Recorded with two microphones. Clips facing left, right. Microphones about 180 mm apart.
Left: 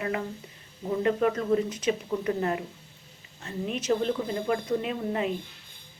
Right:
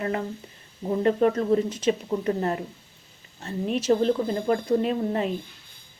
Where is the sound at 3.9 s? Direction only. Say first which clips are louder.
Right 5 dB; 40° right (ahead or behind).